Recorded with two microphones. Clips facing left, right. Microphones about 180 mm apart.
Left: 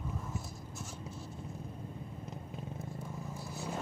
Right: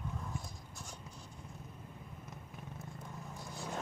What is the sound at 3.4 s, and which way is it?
Vehicle, 5° left (ahead or behind).